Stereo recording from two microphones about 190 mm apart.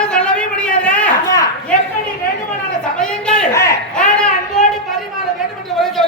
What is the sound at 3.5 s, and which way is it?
Speech, 15° left (ahead or behind).